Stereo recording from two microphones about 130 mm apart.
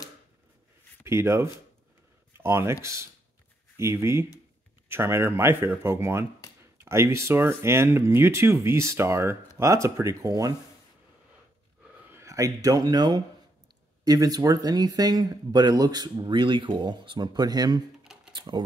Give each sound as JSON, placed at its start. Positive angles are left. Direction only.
{"t": 1.0, "sound": "speech", "side_deg": -20}
{"t": 12.1, "sound": "speech", "side_deg": -20}
{"t": 18.3, "sound": "typewriter", "side_deg": -35}